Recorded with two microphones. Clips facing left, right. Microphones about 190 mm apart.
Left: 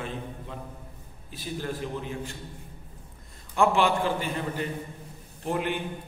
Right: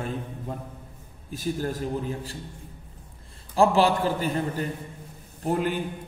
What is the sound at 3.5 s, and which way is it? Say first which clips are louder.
A man's voice: right 3 dB; 35° right (ahead or behind).